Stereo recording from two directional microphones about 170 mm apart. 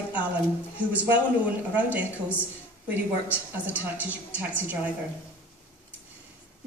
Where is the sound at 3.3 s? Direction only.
10° right (ahead or behind).